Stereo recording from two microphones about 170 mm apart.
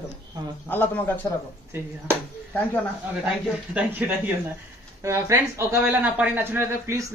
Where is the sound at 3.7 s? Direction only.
10° right (ahead or behind).